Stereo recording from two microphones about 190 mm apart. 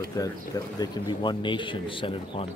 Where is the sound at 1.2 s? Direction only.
25° left (ahead or behind).